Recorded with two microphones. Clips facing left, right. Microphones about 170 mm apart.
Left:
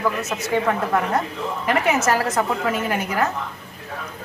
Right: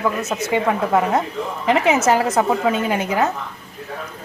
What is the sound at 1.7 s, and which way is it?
A woman's voice, 20° right (ahead or behind).